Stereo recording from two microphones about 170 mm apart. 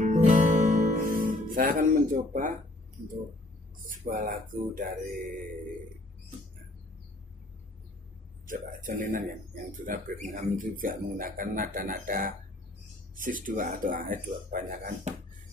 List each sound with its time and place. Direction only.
0.0 s music: 45° right (ahead or behind)
3.8 s speech: 55° right (ahead or behind)
8.5 s speech: 50° right (ahead or behind)